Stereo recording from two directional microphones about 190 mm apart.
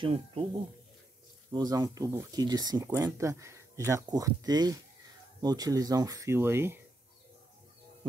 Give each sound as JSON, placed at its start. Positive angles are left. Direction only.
{"t": 0.0, "sound": "speech", "side_deg": -30}
{"t": 1.5, "sound": "speech", "side_deg": -20}